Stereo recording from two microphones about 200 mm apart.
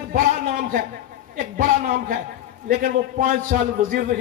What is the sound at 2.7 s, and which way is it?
A man's voice, 45° right (ahead or behind).